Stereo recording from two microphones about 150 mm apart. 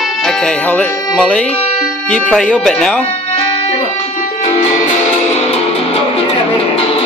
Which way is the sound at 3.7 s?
45° left (ahead or behind).